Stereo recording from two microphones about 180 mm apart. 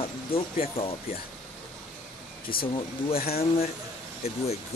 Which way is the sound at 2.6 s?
30° left (ahead or behind).